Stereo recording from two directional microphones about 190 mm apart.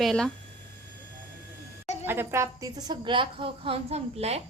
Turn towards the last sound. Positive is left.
turn(degrees=-35)  # may be behind; listen again after turning